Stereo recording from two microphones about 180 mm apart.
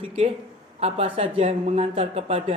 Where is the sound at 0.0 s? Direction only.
30° right (ahead or behind).